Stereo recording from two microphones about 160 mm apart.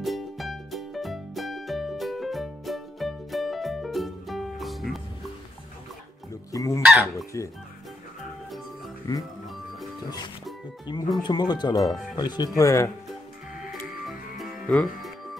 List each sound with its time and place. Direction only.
0.0 s music: centre (ahead or behind)
6.5 s chicken: 20° left (ahead or behind)
6.8 s speech: 5° right (ahead or behind)
10.9 s speech: 30° left (ahead or behind)
11.9 s speech: centre (ahead or behind)
12.2 s speech: 25° left (ahead or behind)
14.0 s music: centre (ahead or behind)